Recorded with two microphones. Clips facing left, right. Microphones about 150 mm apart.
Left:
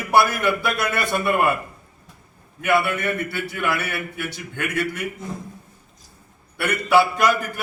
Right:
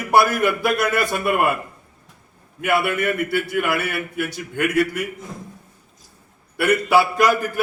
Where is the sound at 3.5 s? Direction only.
45° right (ahead or behind).